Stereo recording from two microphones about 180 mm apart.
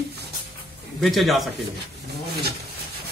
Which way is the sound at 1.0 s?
Centre (ahead or behind).